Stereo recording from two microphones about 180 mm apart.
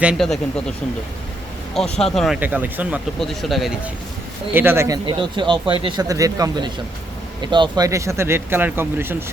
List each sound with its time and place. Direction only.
0.0 s speech: centre (ahead or behind)
1.7 s speech: centre (ahead or behind)
2.4 s speech: 10° right (ahead or behind)
4.5 s speech: 10° right (ahead or behind)
5.0 s speech: 25° right (ahead or behind)